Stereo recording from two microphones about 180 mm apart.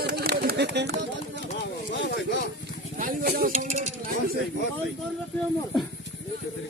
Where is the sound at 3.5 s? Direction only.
40° right (ahead or behind).